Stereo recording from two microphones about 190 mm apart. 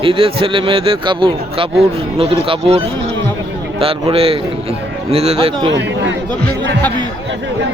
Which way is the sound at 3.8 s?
30° right (ahead or behind).